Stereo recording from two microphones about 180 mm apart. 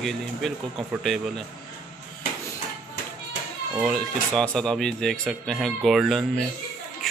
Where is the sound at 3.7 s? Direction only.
Centre (ahead or behind).